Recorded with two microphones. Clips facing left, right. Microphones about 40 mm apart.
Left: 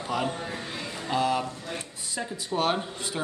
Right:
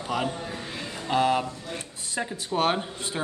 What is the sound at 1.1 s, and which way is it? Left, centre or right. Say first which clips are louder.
Speech: right 3 dB; right.